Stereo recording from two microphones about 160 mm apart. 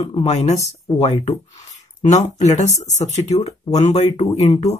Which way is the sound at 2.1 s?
45° left (ahead or behind).